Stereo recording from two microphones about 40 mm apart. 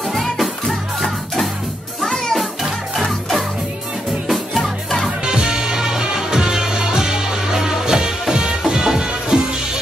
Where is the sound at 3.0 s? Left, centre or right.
Centre.